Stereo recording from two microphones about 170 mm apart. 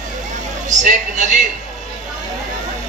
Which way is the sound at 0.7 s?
45° right (ahead or behind).